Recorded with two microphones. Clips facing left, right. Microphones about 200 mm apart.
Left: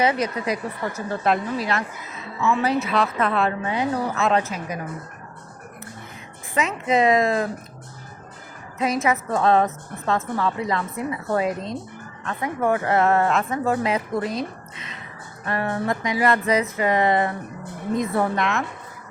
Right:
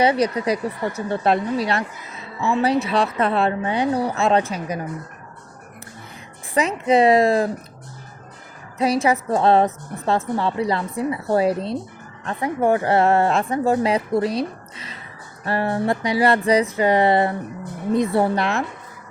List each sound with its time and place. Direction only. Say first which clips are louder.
0.0 s a woman's voice: right 4 dB; 30° right (ahead or behind)
6.8 s a woman's voice: right 4 dB; 30° right (ahead or behind)
8.8 s a woman's voice: right 3 dB; 30° right (ahead or behind)
15.4 s a woman's voice: right 3 dB; 30° right (ahead or behind)